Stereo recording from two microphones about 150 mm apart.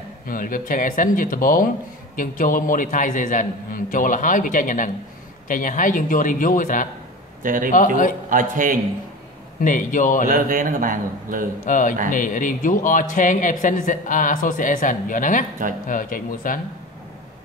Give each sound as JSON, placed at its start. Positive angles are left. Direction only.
{"t": 0.3, "sound": "speech", "side_deg": 65}
{"t": 7.4, "sound": "a man's voice", "side_deg": -60}
{"t": 7.7, "sound": "speech", "side_deg": 60}
{"t": 8.3, "sound": "a man's voice", "side_deg": -60}
{"t": 9.6, "sound": "speech", "side_deg": 60}
{"t": 10.2, "sound": "a man's voice", "side_deg": -65}
{"t": 11.6, "sound": "speech", "side_deg": 60}